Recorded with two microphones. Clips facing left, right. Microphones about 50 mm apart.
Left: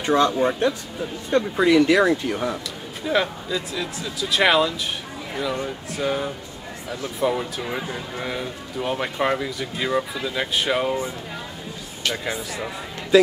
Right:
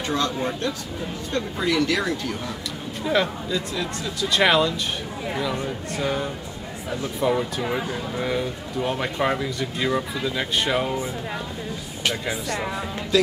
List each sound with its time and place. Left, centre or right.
0.0 s speech: centre
3.1 s speech: centre
12.1 s speech: centre
13.1 s speech: centre